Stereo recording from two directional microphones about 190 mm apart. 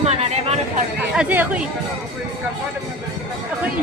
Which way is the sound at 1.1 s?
10° right (ahead or behind).